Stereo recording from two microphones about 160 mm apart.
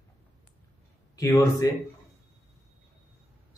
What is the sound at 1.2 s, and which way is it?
Speech, 20° left (ahead or behind).